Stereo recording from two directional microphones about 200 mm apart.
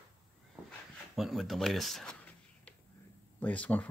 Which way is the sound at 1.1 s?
Centre (ahead or behind).